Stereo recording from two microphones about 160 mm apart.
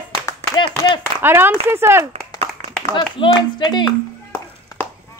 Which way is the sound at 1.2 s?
15° right (ahead or behind).